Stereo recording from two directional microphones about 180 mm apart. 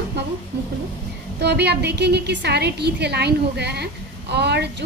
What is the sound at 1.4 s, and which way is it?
A woman's voice, 65° right (ahead or behind).